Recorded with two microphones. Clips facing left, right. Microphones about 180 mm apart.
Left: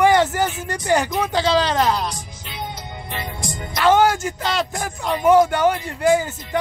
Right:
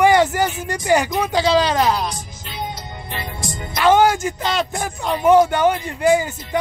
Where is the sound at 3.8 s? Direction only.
15° right (ahead or behind).